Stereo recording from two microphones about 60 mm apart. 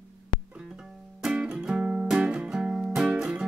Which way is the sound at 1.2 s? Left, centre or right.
Centre.